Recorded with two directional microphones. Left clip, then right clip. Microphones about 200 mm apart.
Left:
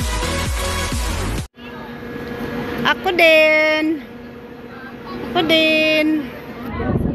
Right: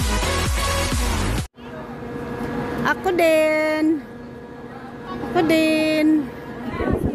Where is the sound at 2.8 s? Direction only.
15° right (ahead or behind).